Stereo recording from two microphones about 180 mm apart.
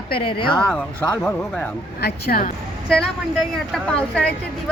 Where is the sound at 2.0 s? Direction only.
65° left (ahead or behind).